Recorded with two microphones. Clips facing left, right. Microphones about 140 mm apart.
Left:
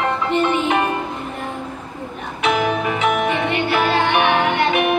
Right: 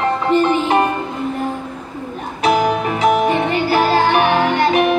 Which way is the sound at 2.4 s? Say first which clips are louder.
Right 3 dB; 35° right (ahead or behind).